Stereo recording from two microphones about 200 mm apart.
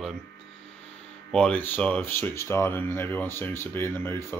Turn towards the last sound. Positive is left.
turn(degrees=10)  # may be behind; listen again after turning